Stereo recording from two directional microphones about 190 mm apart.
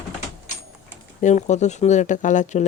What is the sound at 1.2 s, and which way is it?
A woman's voice, 40° left (ahead or behind).